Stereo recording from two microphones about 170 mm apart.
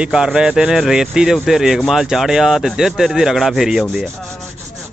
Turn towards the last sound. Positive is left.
turn(degrees=0)  # may be behind; listen again after turning